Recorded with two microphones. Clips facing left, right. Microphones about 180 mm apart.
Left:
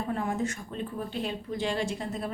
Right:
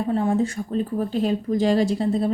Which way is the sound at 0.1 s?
30° right (ahead or behind).